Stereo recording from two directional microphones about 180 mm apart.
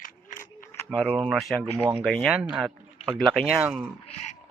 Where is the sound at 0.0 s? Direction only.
50° left (ahead or behind).